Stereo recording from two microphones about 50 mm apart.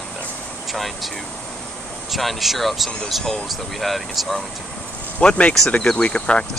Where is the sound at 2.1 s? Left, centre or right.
Centre.